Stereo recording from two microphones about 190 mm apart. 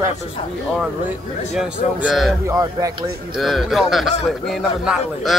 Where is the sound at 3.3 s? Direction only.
Centre (ahead or behind).